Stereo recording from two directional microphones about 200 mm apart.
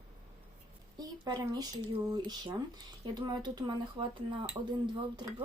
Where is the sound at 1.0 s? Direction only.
20° right (ahead or behind).